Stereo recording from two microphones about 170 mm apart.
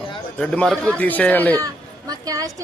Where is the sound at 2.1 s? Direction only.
20° right (ahead or behind).